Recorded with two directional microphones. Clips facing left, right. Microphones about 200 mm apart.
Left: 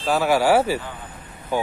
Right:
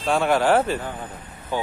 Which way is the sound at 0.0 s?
5° left (ahead or behind).